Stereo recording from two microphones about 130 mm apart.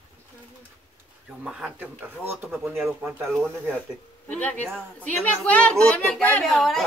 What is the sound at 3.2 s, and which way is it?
A woman's voice, 5° left (ahead or behind).